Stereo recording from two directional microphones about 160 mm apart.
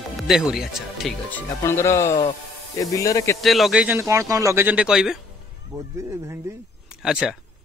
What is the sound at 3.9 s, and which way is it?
Speech, 20° right (ahead or behind).